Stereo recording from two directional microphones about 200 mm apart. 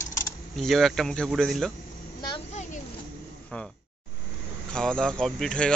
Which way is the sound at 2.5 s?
35° left (ahead or behind).